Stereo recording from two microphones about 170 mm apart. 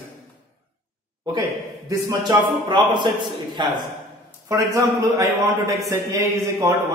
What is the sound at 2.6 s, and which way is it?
A man's voice, 30° right (ahead or behind).